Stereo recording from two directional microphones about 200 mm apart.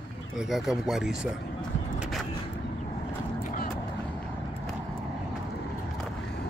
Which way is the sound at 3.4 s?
40° left (ahead or behind).